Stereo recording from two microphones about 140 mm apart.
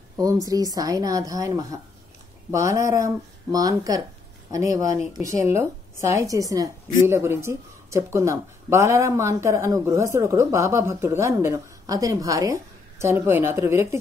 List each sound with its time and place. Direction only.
0.2 s a woman's voice: 25° right (ahead or behind)